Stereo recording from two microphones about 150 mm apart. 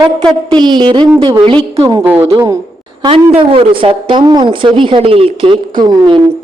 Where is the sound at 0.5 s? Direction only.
30° right (ahead or behind).